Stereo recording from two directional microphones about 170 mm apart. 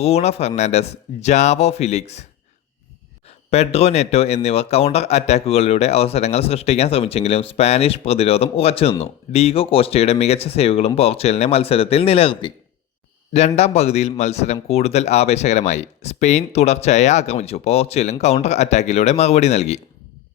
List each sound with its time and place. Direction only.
0.0 s speech: 35° left (ahead or behind)
3.2 s speech: 40° left (ahead or behind)
13.6 s speech: 40° left (ahead or behind)